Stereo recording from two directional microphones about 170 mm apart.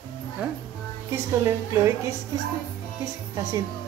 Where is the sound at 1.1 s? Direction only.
15° right (ahead or behind).